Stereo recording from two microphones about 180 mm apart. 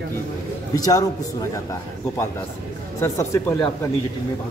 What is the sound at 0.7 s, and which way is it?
Speech, 20° left (ahead or behind).